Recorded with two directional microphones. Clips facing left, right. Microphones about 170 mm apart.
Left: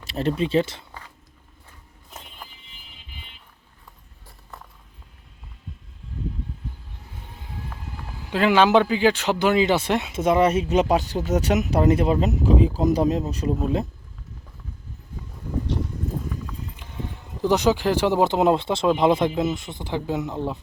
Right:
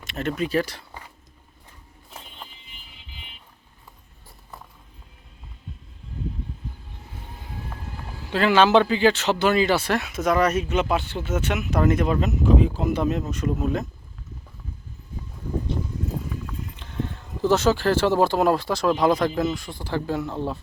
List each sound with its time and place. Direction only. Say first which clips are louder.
0.0 s speech: left 3 dB; 35° left (ahead or behind)
8.3 s speech: even; 15° left (ahead or behind); by 13.8 s 35° left (ahead or behind)
16.7 s speech: right 4 dB; 10° left (ahead or behind)